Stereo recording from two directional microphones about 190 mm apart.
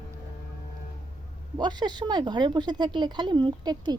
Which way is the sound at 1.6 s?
20° right (ahead or behind).